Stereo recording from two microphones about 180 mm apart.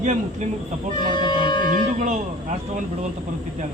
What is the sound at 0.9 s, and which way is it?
Music, 25° left (ahead or behind).